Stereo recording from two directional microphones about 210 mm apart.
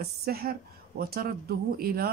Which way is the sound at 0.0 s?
50° right (ahead or behind).